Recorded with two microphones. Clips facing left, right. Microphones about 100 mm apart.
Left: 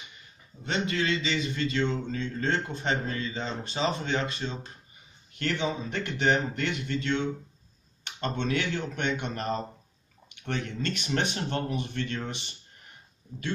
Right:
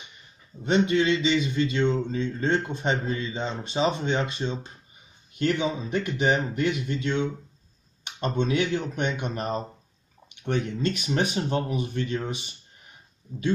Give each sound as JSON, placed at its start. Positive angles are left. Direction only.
{"t": 0.7, "sound": "a man's voice", "side_deg": -20}
{"t": 5.3, "sound": "a man's voice", "side_deg": -10}